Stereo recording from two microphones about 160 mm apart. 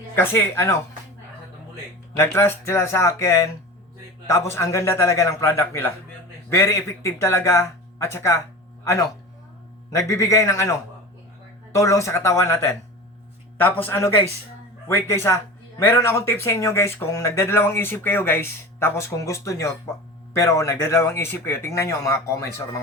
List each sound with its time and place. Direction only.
0.2 s speech: 15° left (ahead or behind)
2.1 s speech: 15° left (ahead or behind)
10.1 s speech: 20° left (ahead or behind)